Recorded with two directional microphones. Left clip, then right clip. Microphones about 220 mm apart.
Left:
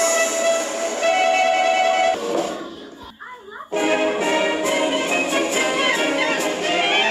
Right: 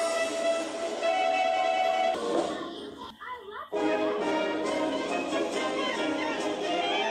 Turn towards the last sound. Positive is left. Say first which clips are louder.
# left 10 dB
turn(degrees=35)  # may be behind; listen again after turning